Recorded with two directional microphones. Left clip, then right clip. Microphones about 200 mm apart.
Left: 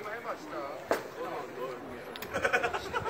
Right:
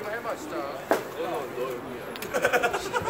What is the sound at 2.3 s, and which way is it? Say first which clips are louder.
Bleat: right 5 dB; 30° right (ahead or behind).